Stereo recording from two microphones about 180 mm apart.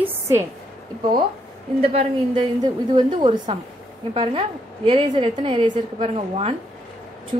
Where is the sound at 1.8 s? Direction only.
30° right (ahead or behind).